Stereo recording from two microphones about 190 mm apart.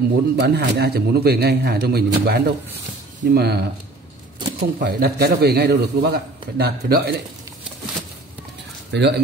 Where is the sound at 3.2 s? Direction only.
60° right (ahead or behind).